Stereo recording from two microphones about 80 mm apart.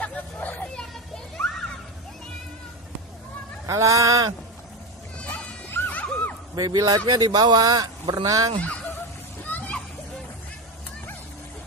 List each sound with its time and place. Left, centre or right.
0.0 s hubbub: centre
3.6 s speech: right
5.1 s insect: centre
5.7 s music: left
6.5 s a man's voice: right
7.1 s speech: right
9.5 s splash: left